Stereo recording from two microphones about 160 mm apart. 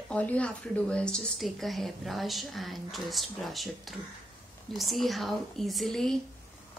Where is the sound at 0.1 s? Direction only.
10° left (ahead or behind).